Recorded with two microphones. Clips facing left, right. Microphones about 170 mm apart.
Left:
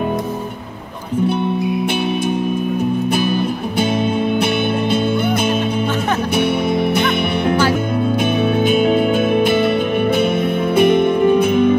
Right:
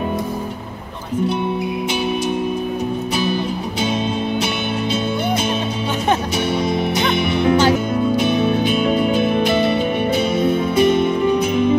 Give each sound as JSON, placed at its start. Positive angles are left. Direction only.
{"t": 7.0, "sound": "music", "side_deg": 55}